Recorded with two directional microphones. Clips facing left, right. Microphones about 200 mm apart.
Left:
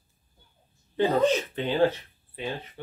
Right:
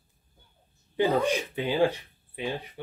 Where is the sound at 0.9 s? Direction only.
10° right (ahead or behind).